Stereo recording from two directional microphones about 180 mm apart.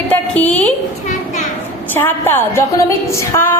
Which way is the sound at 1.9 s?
10° left (ahead or behind).